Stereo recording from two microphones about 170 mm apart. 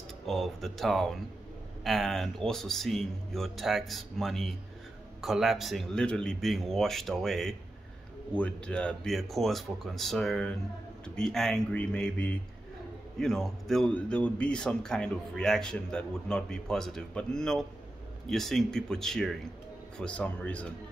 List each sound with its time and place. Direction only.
0.3 s a man's voice: centre (ahead or behind)